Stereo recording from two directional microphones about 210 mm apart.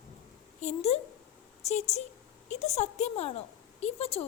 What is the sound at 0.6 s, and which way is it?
A woman's voice, 30° left (ahead or behind).